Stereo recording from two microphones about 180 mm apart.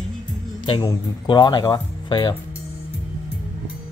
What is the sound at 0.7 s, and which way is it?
Speech, 25° left (ahead or behind).